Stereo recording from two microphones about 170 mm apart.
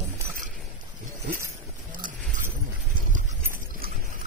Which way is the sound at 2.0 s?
55° right (ahead or behind).